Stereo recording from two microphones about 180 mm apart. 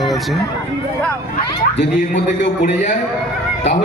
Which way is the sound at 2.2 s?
40° left (ahead or behind).